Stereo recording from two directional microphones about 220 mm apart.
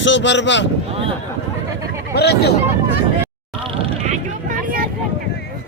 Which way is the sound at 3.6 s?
30° right (ahead or behind).